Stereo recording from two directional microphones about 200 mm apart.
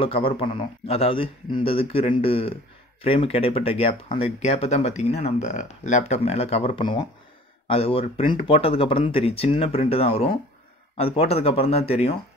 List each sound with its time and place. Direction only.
0.0 s a man's voice: 30° left (ahead or behind)